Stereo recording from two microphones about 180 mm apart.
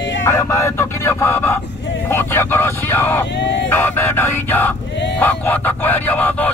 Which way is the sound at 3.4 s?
75° left (ahead or behind).